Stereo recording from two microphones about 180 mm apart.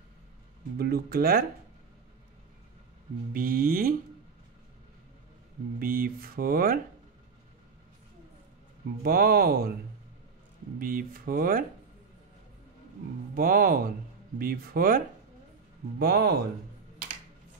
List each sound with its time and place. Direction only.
0.7 s speech: 60° right (ahead or behind)
3.3 s speech: 50° right (ahead or behind)
5.8 s speech: 55° right (ahead or behind)
9.0 s speech: 55° right (ahead or behind)
10.8 s speech: 50° right (ahead or behind)
13.3 s speech: 50° right (ahead or behind)
16.0 s speech: 60° right (ahead or behind)